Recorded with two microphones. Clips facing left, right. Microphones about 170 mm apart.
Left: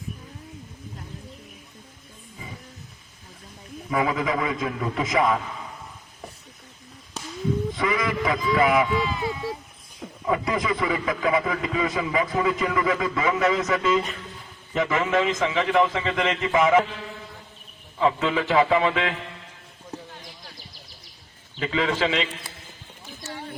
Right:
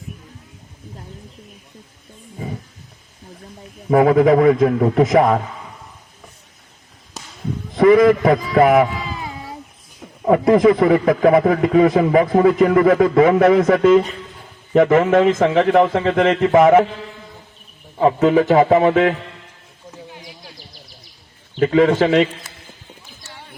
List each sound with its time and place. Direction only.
3.8 s a man's voice: 50° right (ahead or behind)
7.8 s a man's voice: 50° right (ahead or behind)
10.2 s a man's voice: 50° right (ahead or behind)
17.9 s a man's voice: 45° right (ahead or behind)
21.6 s a man's voice: 50° right (ahead or behind)